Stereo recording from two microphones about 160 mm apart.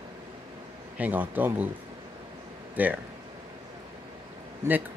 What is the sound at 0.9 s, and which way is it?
Speech, 10° right (ahead or behind).